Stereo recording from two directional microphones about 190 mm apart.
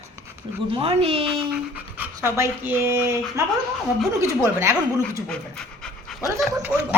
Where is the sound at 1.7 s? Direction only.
10° right (ahead or behind).